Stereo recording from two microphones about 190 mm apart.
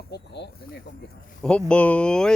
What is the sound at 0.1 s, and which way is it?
Speech, 60° left (ahead or behind).